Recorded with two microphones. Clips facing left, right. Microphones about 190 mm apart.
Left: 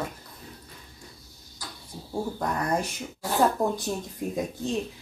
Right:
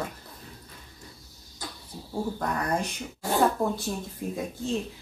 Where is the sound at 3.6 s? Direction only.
20° left (ahead or behind).